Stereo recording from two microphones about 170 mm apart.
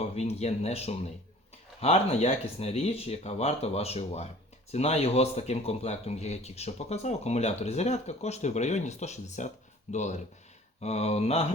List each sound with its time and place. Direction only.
0.0 s speech: 40° left (ahead or behind)